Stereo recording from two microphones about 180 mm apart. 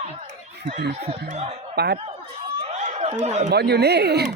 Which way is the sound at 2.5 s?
40° right (ahead or behind).